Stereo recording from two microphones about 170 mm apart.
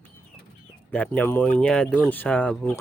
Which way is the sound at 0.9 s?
10° left (ahead or behind).